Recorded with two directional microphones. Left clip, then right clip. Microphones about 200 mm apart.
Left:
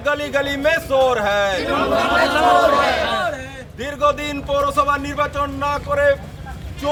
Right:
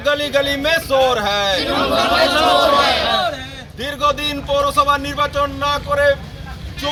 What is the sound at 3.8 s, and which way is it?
A man's voice, 5° left (ahead or behind).